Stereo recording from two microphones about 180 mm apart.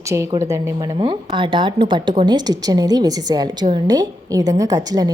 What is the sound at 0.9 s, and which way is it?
A woman's voice, 30° right (ahead or behind).